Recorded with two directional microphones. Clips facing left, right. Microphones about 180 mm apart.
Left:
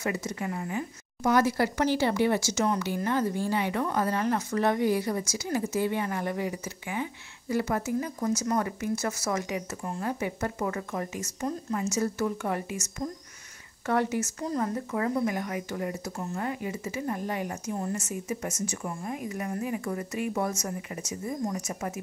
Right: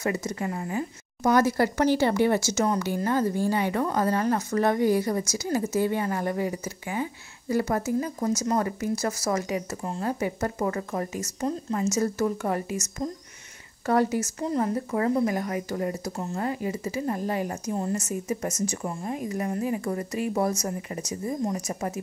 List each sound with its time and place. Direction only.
0.0 s speech: 40° right (ahead or behind)